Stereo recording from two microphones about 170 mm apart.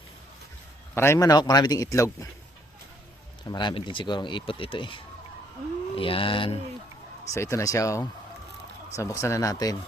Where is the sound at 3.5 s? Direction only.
25° left (ahead or behind).